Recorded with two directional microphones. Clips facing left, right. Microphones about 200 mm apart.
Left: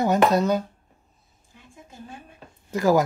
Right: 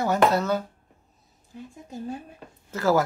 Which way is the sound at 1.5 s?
40° right (ahead or behind).